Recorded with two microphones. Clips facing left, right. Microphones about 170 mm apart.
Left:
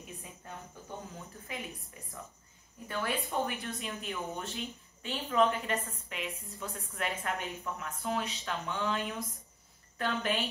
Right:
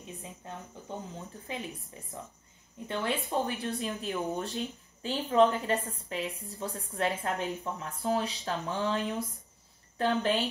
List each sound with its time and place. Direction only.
0.4 s cricket: 25° right (ahead or behind)
1.5 s a woman's voice: 30° right (ahead or behind)